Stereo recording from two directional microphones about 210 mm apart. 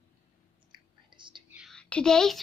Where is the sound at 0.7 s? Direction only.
20° right (ahead or behind).